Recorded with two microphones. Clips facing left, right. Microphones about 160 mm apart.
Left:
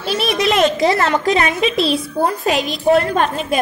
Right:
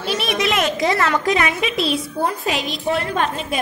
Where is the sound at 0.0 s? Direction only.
35° left (ahead or behind).